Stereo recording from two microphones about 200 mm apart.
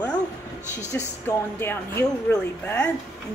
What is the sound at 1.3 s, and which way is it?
A woman's voice, 10° left (ahead or behind).